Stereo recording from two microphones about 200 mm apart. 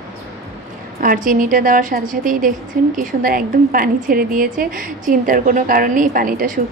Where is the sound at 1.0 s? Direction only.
45° right (ahead or behind).